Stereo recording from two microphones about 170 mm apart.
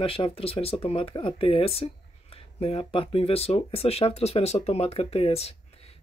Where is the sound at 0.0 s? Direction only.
30° left (ahead or behind).